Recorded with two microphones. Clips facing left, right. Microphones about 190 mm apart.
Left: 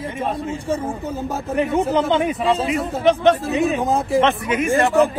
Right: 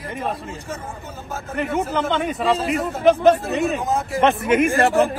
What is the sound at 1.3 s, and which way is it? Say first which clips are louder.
Speech: left 3 dB; 15° left (ahead or behind).